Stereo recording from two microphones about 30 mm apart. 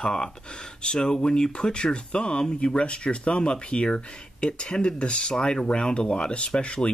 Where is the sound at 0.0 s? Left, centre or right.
Left.